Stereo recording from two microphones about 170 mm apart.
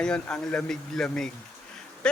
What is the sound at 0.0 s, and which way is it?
Speech, 5° left (ahead or behind).